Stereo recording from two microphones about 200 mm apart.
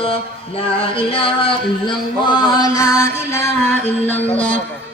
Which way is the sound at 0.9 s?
25° left (ahead or behind).